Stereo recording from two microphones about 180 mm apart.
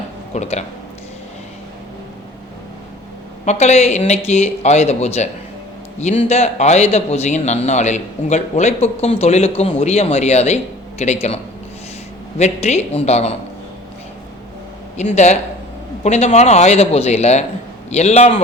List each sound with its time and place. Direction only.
0.3 s a man's voice: 40° left (ahead or behind)
3.4 s a man's voice: 40° left (ahead or behind)
12.4 s a man's voice: 35° left (ahead or behind)
14.9 s a man's voice: 40° left (ahead or behind)